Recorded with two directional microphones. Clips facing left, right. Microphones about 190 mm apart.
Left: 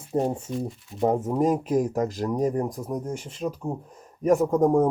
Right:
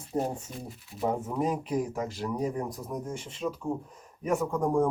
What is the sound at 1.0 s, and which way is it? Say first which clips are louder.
Speech: left 7 dB; 45° left (ahead or behind).